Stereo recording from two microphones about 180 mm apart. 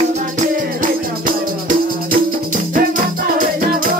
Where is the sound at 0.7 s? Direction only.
50° right (ahead or behind).